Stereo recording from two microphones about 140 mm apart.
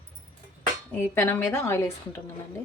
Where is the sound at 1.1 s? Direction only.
15° left (ahead or behind).